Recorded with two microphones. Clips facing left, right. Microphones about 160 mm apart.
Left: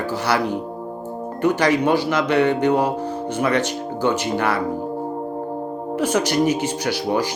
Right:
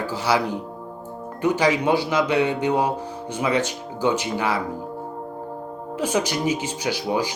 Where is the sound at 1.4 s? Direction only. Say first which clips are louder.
Left 2 dB; 10° right (ahead or behind).